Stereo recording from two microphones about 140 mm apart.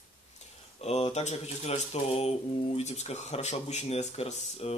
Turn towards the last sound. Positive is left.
turn(degrees=45)  # may be behind; listen again after turning